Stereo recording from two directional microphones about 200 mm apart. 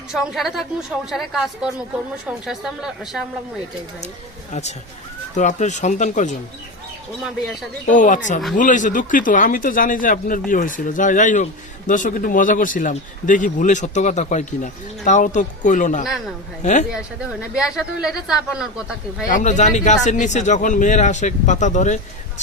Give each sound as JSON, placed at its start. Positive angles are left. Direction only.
{"t": 0.1, "sound": "speech", "side_deg": 0}
{"t": 5.3, "sound": "speech", "side_deg": 35}
{"t": 7.9, "sound": "speech", "side_deg": 40}
{"t": 17.5, "sound": "speech", "side_deg": -5}
{"t": 19.3, "sound": "speech", "side_deg": 35}